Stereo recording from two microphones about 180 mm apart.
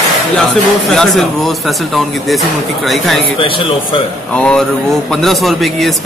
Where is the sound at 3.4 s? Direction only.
30° left (ahead or behind).